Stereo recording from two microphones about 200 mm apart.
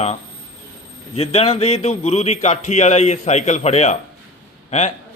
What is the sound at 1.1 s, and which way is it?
A man's voice, 30° left (ahead or behind).